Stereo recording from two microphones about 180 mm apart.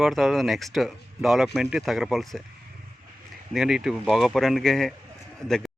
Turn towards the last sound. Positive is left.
turn(degrees=0)  # may be behind; listen again after turning